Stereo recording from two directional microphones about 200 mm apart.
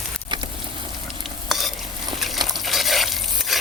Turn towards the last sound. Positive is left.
turn(degrees=0)  # may be behind; listen again after turning